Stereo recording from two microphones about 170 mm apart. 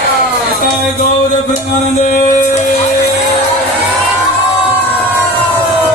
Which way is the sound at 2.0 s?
45° left (ahead or behind).